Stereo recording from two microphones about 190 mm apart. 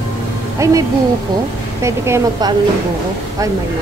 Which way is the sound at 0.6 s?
15° right (ahead or behind).